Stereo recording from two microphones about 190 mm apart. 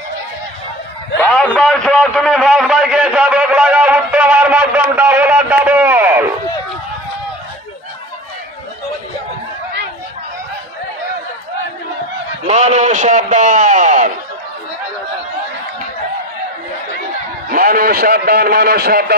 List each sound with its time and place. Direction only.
1.2 s a sound: 5° left (ahead or behind); by 6.2 s 10° right (ahead or behind)
12.4 s a man's voice: 35° right (ahead or behind)
17.5 s a man's voice: 50° right (ahead or behind)